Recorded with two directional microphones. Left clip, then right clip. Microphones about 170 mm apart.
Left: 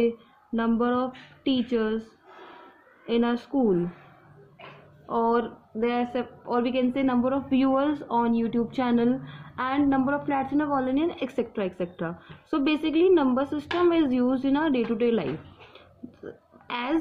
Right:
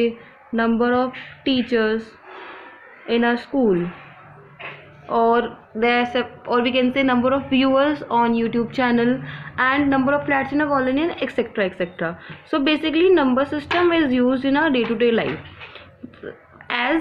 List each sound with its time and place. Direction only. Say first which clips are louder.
0.6 s speech: right 7 dB; 65° left (ahead or behind)
3.1 s speech: right 6 dB; 65° left (ahead or behind)
5.8 s a woman's voice: right 8 dB; 60° left (ahead or behind)
16.6 s speech: right 9 dB; 70° left (ahead or behind)